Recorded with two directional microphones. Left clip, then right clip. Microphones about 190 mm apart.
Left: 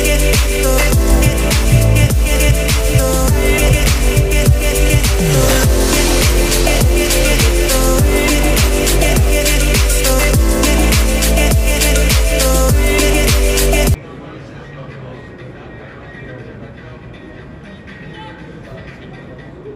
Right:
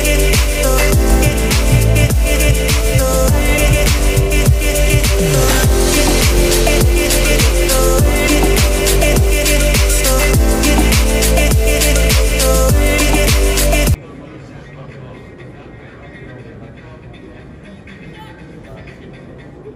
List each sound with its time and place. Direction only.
0.0 s music: centre (ahead or behind)